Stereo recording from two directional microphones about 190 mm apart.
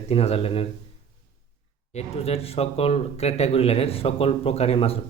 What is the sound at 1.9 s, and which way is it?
Speech, 30° left (ahead or behind).